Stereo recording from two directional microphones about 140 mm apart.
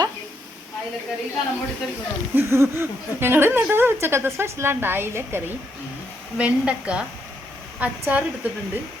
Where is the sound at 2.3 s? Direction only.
20° right (ahead or behind).